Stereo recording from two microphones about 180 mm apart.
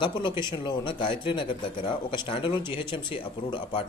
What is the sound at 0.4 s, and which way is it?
Speech, 25° left (ahead or behind).